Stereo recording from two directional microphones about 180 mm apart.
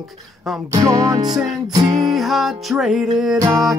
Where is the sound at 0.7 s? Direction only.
20° right (ahead or behind).